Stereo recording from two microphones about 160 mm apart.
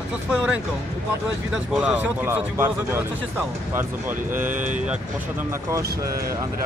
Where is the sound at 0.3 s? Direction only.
5° right (ahead or behind).